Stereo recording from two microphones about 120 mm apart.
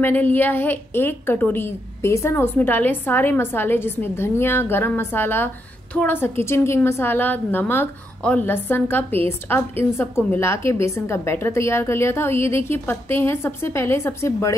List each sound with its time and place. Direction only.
0.0 s a woman's voice: 15° left (ahead or behind)